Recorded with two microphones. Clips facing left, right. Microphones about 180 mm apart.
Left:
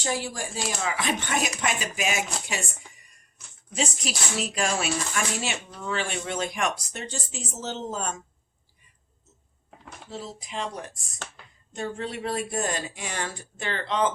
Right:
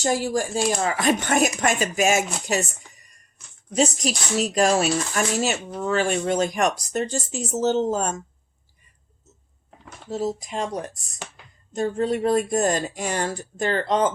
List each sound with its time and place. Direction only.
0.0 s speech: 45° right (ahead or behind)
2.5 s a sound: 40° right (ahead or behind)
3.7 s speech: 40° right (ahead or behind)
10.1 s speech: 45° right (ahead or behind)